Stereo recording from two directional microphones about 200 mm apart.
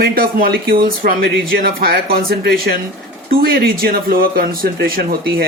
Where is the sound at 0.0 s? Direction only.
45° right (ahead or behind).